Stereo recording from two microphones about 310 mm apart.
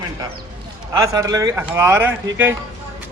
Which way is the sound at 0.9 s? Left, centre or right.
Centre.